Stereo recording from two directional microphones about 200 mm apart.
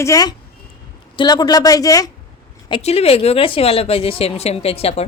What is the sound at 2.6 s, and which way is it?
Speech, 25° left (ahead or behind).